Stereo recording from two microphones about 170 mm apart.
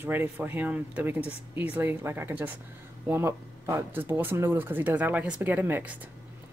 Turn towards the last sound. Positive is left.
turn(degrees=-10)  # may be behind; listen again after turning